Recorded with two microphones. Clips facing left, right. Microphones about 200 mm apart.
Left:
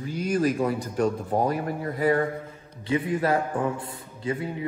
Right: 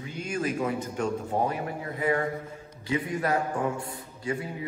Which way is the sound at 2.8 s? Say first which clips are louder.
Left 4 dB; 25° left (ahead or behind).